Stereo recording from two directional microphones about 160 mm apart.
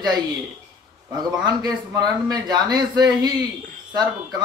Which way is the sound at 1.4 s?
25° right (ahead or behind).